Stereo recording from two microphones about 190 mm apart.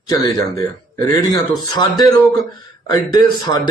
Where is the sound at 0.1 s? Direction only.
15° left (ahead or behind).